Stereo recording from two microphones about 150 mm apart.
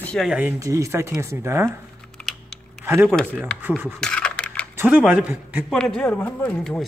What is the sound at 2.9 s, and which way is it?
Speech, 15° right (ahead or behind).